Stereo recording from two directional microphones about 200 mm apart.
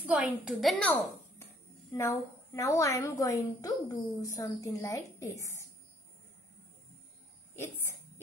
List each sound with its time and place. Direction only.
0.0 s a woman's voice: 5° right (ahead or behind)
2.0 s a woman's voice: 15° left (ahead or behind)
7.5 s a sound: 10° left (ahead or behind)